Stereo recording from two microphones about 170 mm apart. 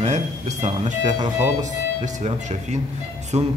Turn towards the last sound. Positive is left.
turn(degrees=-40)  # may be behind; listen again after turning